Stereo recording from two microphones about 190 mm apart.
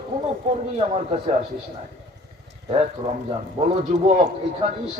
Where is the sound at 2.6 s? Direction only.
30° right (ahead or behind).